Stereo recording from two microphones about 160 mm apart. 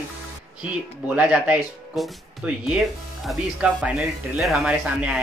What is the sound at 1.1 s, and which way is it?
Speech, 5° right (ahead or behind).